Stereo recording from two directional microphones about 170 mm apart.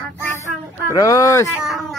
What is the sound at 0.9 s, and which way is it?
Speech, 20° left (ahead or behind).